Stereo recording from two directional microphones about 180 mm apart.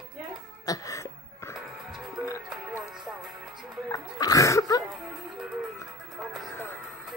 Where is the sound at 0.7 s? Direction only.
20° left (ahead or behind).